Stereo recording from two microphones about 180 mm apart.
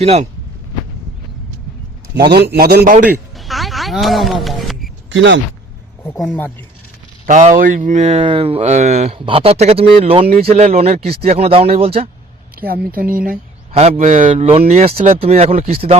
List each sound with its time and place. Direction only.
0.0 s speech: 35° right (ahead or behind)
2.5 s a man's voice: 60° right (ahead or behind)
3.3 s music: centre (ahead or behind)
5.1 s speech: 90° right
6.1 s speech: 5° left (ahead or behind)
7.3 s speech: 45° right (ahead or behind)
12.5 s speech: 55° right (ahead or behind)
13.7 s speech: 35° right (ahead or behind)